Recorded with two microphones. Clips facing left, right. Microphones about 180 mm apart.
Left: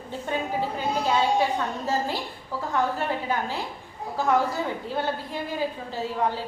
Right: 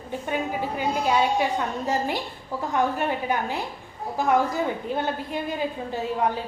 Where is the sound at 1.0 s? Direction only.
15° right (ahead or behind).